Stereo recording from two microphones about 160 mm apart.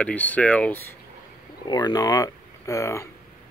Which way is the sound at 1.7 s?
25° left (ahead or behind).